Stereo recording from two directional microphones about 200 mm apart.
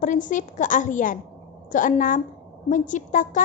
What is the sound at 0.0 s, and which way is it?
A woman's voice, 40° left (ahead or behind).